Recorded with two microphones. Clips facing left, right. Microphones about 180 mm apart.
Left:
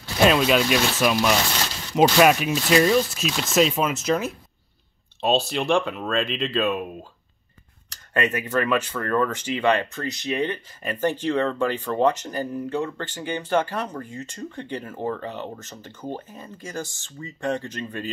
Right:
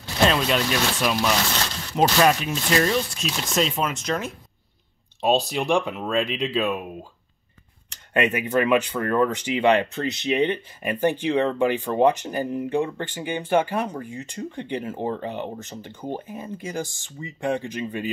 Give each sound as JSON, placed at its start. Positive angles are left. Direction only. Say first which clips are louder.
{"t": 0.3, "sound": "speech", "louder": "left 3 dB", "side_deg": 10}
{"t": 5.2, "sound": "speech", "louder": "right 1 dB", "side_deg": -15}
{"t": 8.1, "sound": "speech", "louder": "right 2 dB", "side_deg": -15}